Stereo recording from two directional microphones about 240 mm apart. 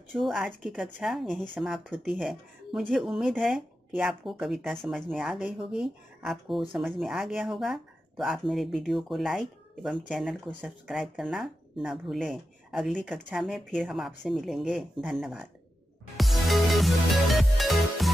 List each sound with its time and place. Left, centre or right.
0.2 s speech: centre
16.2 s music: centre